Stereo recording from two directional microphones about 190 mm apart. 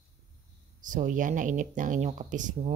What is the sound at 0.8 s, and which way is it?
Speech, 40° right (ahead or behind).